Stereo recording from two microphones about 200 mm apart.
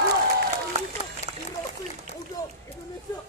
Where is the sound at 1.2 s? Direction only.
30° left (ahead or behind).